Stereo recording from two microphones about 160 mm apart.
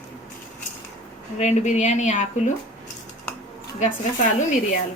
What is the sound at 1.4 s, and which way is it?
A woman's voice, 45° left (ahead or behind).